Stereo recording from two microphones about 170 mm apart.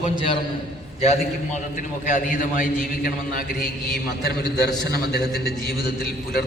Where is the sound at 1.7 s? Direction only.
45° left (ahead or behind).